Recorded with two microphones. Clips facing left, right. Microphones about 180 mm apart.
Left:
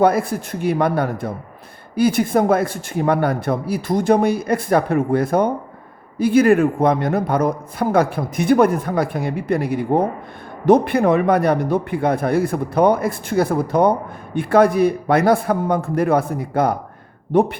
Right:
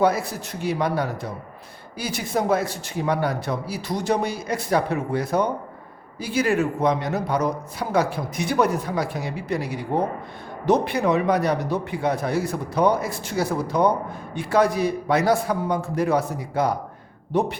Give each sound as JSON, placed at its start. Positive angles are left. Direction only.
{"t": 0.0, "sound": "a man's voice", "side_deg": 55}